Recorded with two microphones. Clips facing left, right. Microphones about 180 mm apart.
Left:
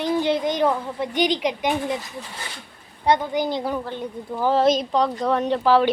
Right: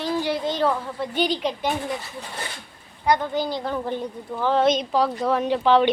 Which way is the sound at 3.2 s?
15° left (ahead or behind).